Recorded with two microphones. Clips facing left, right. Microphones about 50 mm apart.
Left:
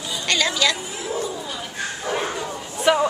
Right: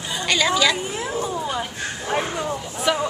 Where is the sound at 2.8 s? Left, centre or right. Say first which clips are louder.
Left 4 dB; centre.